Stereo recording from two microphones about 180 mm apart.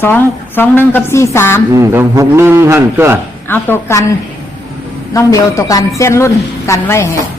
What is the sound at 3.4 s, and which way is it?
Speech, 10° left (ahead or behind).